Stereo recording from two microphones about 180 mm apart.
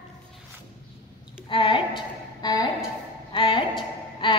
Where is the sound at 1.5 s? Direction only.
30° left (ahead or behind).